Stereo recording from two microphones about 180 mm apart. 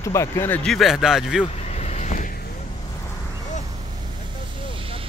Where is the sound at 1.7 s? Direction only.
40° left (ahead or behind).